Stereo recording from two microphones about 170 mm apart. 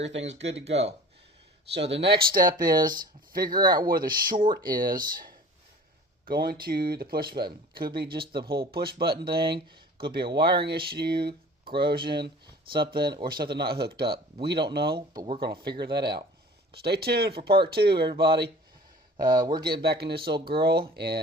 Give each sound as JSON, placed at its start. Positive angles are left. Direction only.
{"t": 0.0, "sound": "speech", "side_deg": -90}
{"t": 0.6, "sound": "speech", "side_deg": -40}
{"t": 1.7, "sound": "speech", "side_deg": -90}
{"t": 14.9, "sound": "speech", "side_deg": -25}
{"t": 15.8, "sound": "speech", "side_deg": -70}
{"t": 19.3, "sound": "speech", "side_deg": -25}
{"t": 19.8, "sound": "speech", "side_deg": -70}